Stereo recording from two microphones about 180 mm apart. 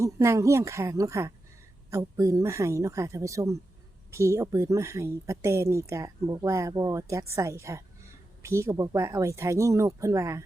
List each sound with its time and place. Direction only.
0.0 s speech: 15° right (ahead or behind)